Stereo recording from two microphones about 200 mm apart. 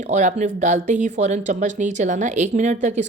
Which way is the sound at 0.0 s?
35° right (ahead or behind).